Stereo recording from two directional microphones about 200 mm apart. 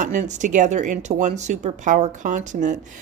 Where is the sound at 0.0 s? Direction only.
35° right (ahead or behind).